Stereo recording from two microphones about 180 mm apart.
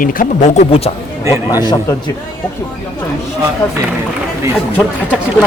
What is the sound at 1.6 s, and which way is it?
Speech, 25° left (ahead or behind).